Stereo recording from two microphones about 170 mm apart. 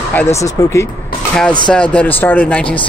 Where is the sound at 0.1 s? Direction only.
15° left (ahead or behind).